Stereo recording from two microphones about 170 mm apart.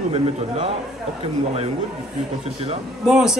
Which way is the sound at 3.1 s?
5° right (ahead or behind).